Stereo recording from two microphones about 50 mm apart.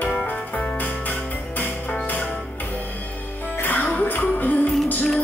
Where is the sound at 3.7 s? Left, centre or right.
Left.